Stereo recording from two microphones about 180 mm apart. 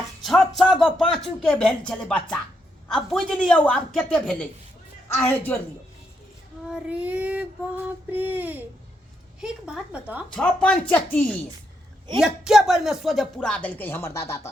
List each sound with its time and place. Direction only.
0.2 s speech: centre (ahead or behind)
6.7 s child singing: 5° right (ahead or behind)
9.4 s speech: 5° right (ahead or behind)
10.3 s speech: 5° left (ahead or behind)